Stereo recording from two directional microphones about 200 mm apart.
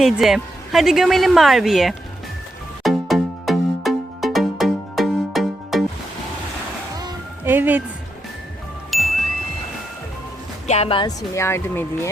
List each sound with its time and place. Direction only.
0.0 s speech: centre (ahead or behind)
2.8 s music: centre (ahead or behind)
7.4 s speech: 10° right (ahead or behind)
8.9 s jingle: centre (ahead or behind)
10.7 s speech: 30° left (ahead or behind)
11.3 s speech: 15° left (ahead or behind)